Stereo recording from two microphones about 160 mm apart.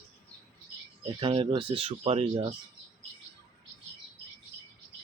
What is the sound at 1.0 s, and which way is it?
Speech, 35° right (ahead or behind).